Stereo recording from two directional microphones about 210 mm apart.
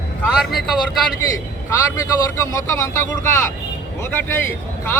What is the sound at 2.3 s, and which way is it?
Speech, 15° left (ahead or behind).